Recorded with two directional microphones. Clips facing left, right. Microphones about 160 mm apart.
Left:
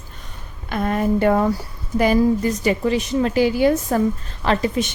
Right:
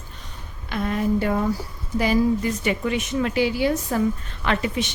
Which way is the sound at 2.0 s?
45° left (ahead or behind).